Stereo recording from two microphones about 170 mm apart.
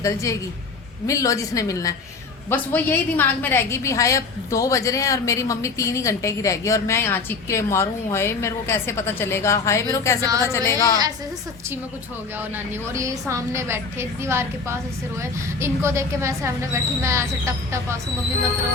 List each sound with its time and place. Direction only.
0.0 s a woman's voice: 20° left (ahead or behind)
10.2 s a woman's voice: 20° right (ahead or behind)
10.4 s a woman's voice: 15° left (ahead or behind)
12.4 s speech: 15° right (ahead or behind)